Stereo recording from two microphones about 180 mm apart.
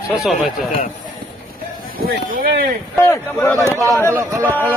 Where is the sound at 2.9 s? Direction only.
15° left (ahead or behind).